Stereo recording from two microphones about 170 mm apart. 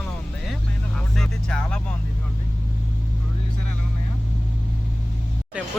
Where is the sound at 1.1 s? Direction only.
5° left (ahead or behind).